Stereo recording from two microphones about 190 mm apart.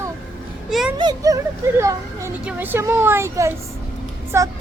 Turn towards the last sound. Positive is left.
turn(degrees=-15)  # may be behind; listen again after turning